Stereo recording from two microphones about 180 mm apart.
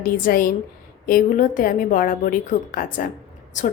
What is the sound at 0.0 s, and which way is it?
A woman's voice, 55° left (ahead or behind).